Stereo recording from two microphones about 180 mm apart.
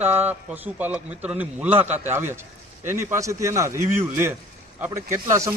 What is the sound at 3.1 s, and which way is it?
Speech, 15° right (ahead or behind).